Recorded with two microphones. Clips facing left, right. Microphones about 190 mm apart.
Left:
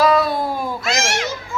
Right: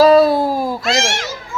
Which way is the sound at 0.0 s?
35° right (ahead or behind).